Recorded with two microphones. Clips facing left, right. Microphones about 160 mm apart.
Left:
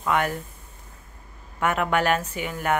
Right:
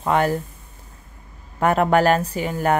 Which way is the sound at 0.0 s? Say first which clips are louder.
Right 5 dB; 35° right (ahead or behind).